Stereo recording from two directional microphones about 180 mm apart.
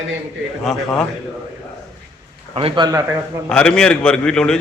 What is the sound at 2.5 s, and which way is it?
Speech, 25° right (ahead or behind).